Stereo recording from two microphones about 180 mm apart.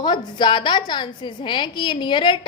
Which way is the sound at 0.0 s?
25° left (ahead or behind).